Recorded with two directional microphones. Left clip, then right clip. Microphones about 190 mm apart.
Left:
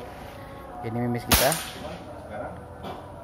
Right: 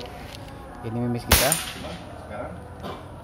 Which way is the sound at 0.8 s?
5° left (ahead or behind).